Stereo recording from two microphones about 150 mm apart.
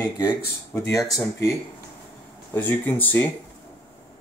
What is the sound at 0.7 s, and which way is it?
Speech, 15° left (ahead or behind).